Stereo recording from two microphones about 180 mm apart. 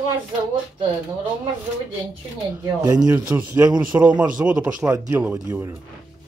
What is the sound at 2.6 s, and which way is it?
Speech, 20° right (ahead or behind).